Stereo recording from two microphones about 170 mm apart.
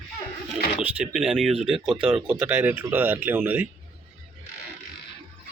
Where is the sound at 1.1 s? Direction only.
5° right (ahead or behind).